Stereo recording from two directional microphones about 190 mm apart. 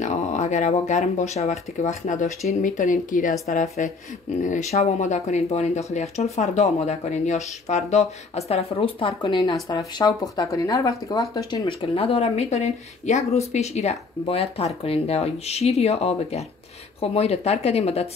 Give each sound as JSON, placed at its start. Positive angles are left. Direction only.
{"t": 0.0, "sound": "speech", "side_deg": 40}